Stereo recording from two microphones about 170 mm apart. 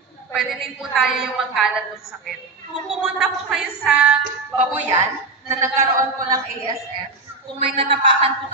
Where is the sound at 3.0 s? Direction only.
5° right (ahead or behind).